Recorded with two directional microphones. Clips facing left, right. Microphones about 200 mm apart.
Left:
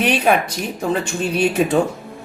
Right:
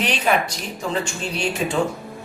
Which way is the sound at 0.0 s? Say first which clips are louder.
Left 5 dB; 55° left (ahead or behind).